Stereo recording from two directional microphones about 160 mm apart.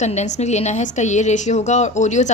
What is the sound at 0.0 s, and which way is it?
A woman's voice, 45° left (ahead or behind).